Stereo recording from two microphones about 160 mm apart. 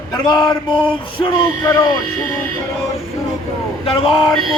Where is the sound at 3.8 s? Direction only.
35° left (ahead or behind).